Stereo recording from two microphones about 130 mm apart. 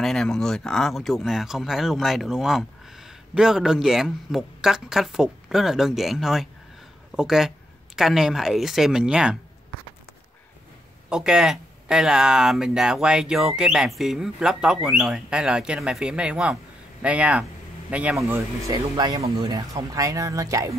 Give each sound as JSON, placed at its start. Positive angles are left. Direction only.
{"t": 0.0, "sound": "speech", "side_deg": 5}
{"t": 11.1, "sound": "speech", "side_deg": -5}
{"t": 18.3, "sound": "speech", "side_deg": -25}